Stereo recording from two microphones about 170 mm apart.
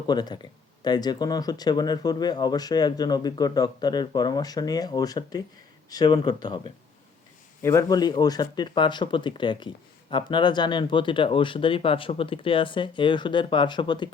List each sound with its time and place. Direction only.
0.1 s speech: 25° left (ahead or behind)
7.6 s speech: 15° left (ahead or behind)